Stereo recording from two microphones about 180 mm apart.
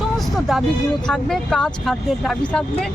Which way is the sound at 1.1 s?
5° left (ahead or behind).